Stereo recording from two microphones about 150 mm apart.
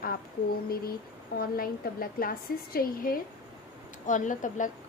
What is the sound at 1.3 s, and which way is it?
A woman's voice, 80° left.